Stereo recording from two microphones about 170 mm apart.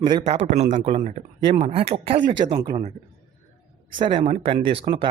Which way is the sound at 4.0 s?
30° right (ahead or behind).